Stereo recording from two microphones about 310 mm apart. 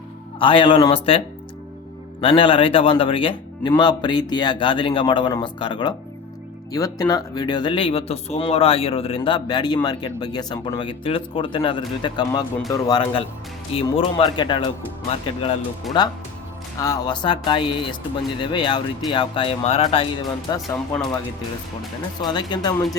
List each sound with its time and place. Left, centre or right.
0.3 s speech: centre
2.2 s speech: centre
15.9 s speech: centre
16.8 s speech: centre
20.7 s speech: centre
22.2 s speech: centre